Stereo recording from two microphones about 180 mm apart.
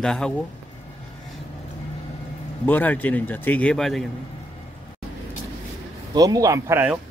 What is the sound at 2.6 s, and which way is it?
A man's voice, 10° left (ahead or behind).